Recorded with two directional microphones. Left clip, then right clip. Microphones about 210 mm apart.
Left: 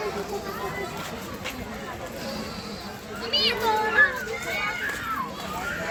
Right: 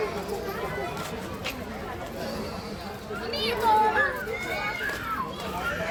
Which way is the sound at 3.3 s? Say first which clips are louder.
Left 6 dB; 45° right (ahead or behind).